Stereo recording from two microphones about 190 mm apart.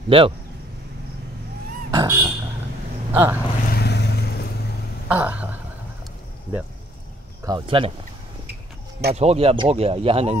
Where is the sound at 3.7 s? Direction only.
60° left (ahead or behind).